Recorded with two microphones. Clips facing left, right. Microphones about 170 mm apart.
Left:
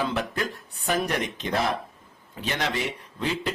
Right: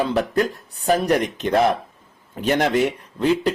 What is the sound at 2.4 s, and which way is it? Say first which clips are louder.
Speech: right 10 dB; 50° right (ahead or behind).